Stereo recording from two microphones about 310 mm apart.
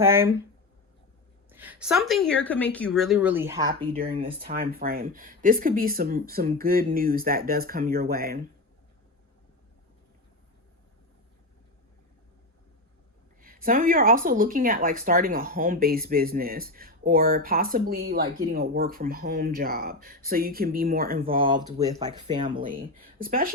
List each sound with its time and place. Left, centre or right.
0.0 s speech: centre
1.5 s a woman's voice: centre
3.9 s speech: right
13.4 s speech: right
21.5 s speech: centre
22.7 s speech: right